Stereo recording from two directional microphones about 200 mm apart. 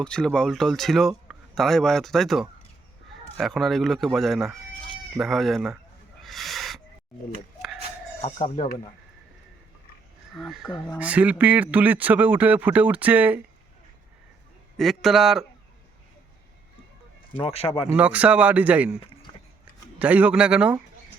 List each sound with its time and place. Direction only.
0.0 s speech: 5° left (ahead or behind)
6.2 s a sound: centre (ahead or behind)
8.2 s speech: 25° left (ahead or behind)
10.3 s a man's voice: centre (ahead or behind)
14.8 s speech: centre (ahead or behind)
17.3 s speech: 30° left (ahead or behind)
17.9 s a man's voice: 5° right (ahead or behind)
20.0 s a man's voice: 5° right (ahead or behind)